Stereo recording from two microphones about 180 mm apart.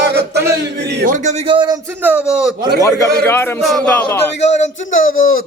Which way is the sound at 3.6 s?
Centre (ahead or behind).